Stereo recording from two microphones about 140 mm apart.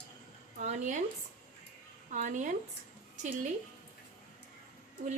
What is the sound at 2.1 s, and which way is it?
Speech, 60° right (ahead or behind).